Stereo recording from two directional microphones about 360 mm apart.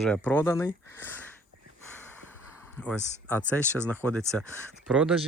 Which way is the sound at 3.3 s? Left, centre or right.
Centre.